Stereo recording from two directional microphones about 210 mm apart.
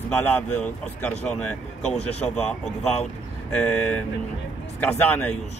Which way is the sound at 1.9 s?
30° left (ahead or behind).